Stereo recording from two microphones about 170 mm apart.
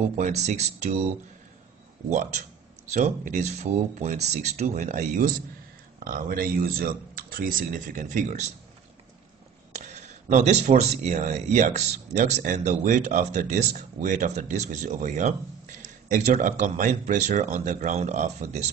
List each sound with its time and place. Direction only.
0.2 s speech: 40° right (ahead or behind)
2.0 s speech: 45° right (ahead or behind)
9.8 s speech: 45° right (ahead or behind)